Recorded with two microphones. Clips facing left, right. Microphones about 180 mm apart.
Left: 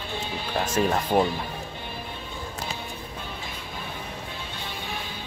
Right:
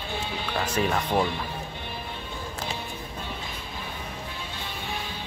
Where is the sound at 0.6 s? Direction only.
45° left (ahead or behind).